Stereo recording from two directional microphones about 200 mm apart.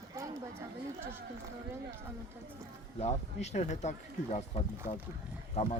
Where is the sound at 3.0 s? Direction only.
35° left (ahead or behind).